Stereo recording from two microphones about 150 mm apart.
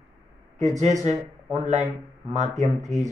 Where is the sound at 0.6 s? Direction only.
50° right (ahead or behind).